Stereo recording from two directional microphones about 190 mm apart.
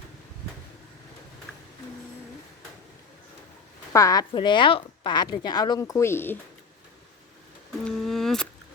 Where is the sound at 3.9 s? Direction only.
15° left (ahead or behind).